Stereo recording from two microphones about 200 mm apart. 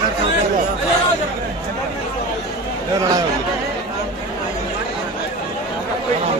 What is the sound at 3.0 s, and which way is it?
Chatter, 15° right (ahead or behind).